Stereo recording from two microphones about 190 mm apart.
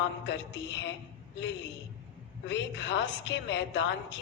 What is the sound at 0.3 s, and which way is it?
Speech, 70° left (ahead or behind).